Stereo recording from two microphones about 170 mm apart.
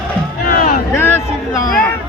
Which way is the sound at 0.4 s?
55° left (ahead or behind).